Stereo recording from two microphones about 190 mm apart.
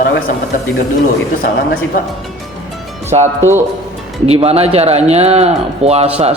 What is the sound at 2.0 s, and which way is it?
Speech, 45° left (ahead or behind).